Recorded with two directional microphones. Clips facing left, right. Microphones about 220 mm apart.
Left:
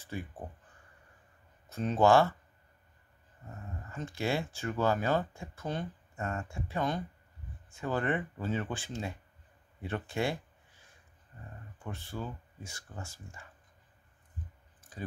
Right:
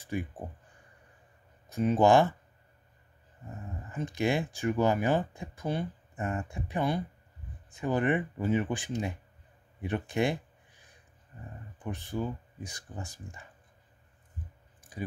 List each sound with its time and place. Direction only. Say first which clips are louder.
0.0 s speech: right 5 dB; 15° right (ahead or behind)
1.7 s speech: right 2 dB; 10° right (ahead or behind)
3.9 s speech: right 4 dB; 15° right (ahead or behind)
11.8 s speech: right 6 dB; 15° right (ahead or behind)
14.8 s clicking: right 4 dB; 15° right (ahead or behind)